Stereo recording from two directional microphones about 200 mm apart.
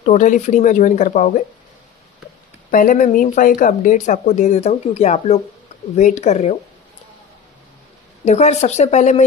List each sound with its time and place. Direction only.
0.0 s speech: 35° left (ahead or behind)
2.7 s speech: 40° left (ahead or behind)
8.3 s speech: 35° left (ahead or behind)